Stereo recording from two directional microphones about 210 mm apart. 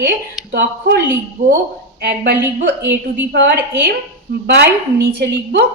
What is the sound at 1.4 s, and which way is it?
Speech, 35° right (ahead or behind).